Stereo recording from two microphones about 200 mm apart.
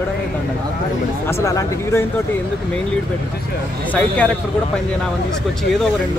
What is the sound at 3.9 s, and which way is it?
Speech, 5° left (ahead or behind).